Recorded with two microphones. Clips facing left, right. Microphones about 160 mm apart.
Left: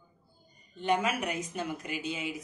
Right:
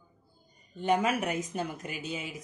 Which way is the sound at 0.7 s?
45° right (ahead or behind).